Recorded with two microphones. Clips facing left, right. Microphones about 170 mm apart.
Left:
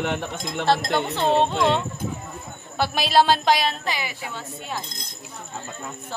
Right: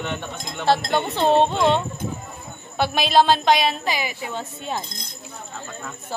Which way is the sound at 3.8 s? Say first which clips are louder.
Right 3 dB; 15° right (ahead or behind).